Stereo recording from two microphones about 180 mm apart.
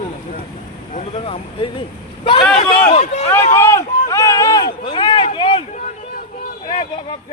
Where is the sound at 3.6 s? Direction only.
15° left (ahead or behind).